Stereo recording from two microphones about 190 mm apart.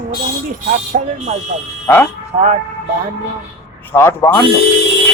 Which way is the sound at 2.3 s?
40° right (ahead or behind).